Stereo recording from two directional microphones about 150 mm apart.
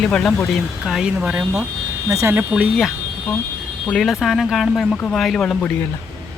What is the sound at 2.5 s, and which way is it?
Speech, 5° right (ahead or behind).